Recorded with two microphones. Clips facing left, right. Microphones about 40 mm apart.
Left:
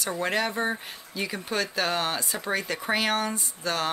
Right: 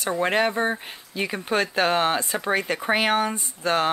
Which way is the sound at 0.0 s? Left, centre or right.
Right.